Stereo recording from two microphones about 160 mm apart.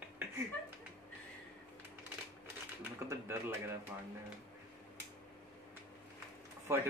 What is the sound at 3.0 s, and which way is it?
Speech, 15° right (ahead or behind).